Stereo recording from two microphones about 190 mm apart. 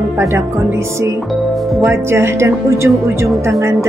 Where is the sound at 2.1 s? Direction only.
15° right (ahead or behind).